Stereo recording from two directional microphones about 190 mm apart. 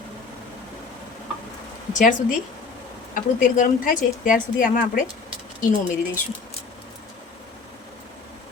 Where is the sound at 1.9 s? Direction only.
40° left (ahead or behind).